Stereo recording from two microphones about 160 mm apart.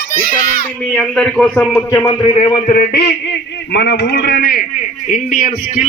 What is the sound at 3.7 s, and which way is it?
Speech, 90° left.